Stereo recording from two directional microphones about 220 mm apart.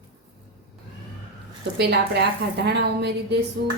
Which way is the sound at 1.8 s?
50° right (ahead or behind).